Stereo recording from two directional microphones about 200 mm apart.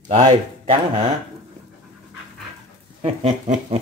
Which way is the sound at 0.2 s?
25° right (ahead or behind).